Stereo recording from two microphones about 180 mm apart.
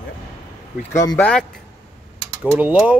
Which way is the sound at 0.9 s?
15° left (ahead or behind).